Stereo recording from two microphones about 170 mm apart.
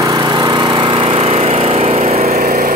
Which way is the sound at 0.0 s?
25° right (ahead or behind).